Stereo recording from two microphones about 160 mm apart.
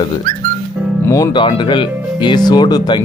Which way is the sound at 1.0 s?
20° left (ahead or behind).